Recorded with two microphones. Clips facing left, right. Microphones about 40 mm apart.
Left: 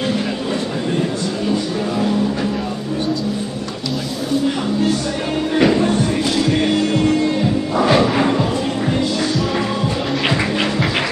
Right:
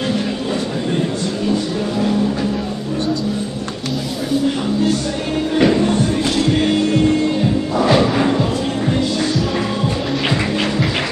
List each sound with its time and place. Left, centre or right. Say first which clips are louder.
5.6 s music: even; centre
7.7 s music: even; centre
8.0 s music: even; centre
10.2 s music: left 1 dB; centre